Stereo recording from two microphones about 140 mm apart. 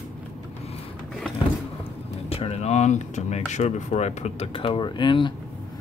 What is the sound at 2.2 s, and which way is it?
Speech, 45° left (ahead or behind).